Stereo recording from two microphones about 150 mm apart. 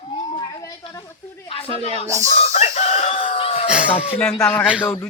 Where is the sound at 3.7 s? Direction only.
5° right (ahead or behind).